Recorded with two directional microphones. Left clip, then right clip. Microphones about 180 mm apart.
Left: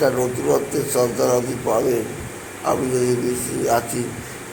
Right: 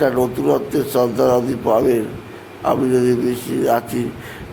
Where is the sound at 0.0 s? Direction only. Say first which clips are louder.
Right 2 dB; 40° right (ahead or behind).